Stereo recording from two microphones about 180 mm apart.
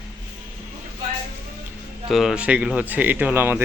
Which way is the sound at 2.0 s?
Centre (ahead or behind).